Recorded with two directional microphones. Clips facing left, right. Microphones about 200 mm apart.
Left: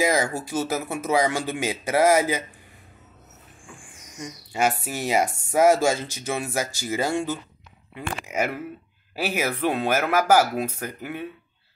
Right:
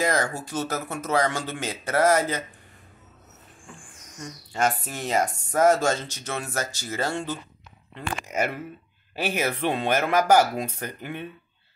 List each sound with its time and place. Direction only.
0.0 s speech: 10° left (ahead or behind)
4.2 s speech: 10° left (ahead or behind)